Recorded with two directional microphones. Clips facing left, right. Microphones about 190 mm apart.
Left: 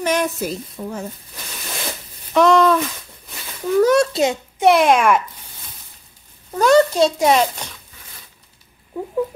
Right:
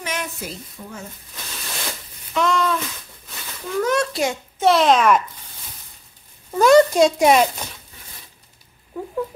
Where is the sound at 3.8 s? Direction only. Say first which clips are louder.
Left 4 dB; 30° left (ahead or behind); by 5.2 s 10° left (ahead or behind).